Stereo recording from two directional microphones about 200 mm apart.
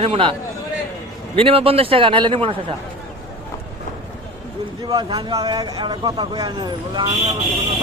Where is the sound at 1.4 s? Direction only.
30° right (ahead or behind).